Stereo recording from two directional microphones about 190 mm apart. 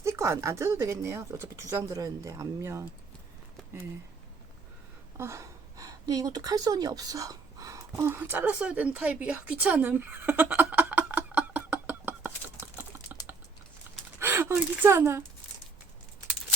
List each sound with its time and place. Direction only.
0.0 s speech: 15° right (ahead or behind)
5.1 s a sound: 15° right (ahead or behind)
14.2 s a woman's voice: 10° right (ahead or behind)